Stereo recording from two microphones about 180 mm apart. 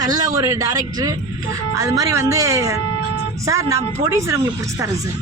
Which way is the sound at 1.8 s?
20° right (ahead or behind).